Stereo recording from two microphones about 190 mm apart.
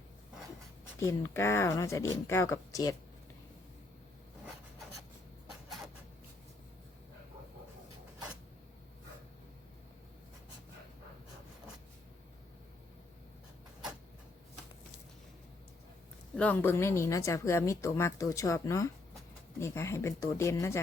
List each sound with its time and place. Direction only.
0.9 s a woman's voice: 15° left (ahead or behind)
16.3 s a woman's voice: 5° left (ahead or behind)